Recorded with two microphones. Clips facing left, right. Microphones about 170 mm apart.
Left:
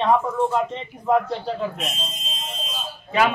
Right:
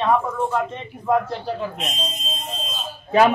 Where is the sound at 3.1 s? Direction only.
40° right (ahead or behind).